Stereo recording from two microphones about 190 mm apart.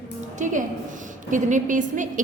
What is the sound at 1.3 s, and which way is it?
Speech, 40° right (ahead or behind).